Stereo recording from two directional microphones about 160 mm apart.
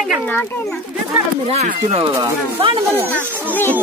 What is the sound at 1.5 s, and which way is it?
Speech, 40° right (ahead or behind).